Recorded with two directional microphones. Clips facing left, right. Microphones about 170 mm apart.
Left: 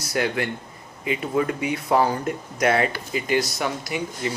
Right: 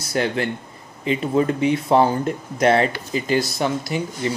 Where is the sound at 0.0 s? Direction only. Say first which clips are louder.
Right 2 dB; 30° right (ahead or behind).